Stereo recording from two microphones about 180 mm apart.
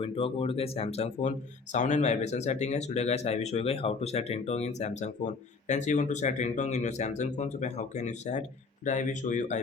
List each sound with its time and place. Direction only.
0.0 s speech: 30° left (ahead or behind)